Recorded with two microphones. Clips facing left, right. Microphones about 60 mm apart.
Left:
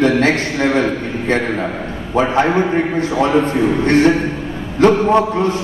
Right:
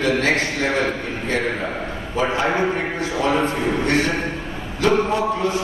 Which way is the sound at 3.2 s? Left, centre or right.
Left.